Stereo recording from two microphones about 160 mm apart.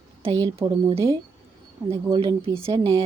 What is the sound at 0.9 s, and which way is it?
Speech, 15° right (ahead or behind).